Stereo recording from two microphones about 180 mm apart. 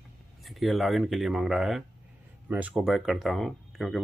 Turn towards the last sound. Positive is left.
turn(degrees=0)  # may be behind; listen again after turning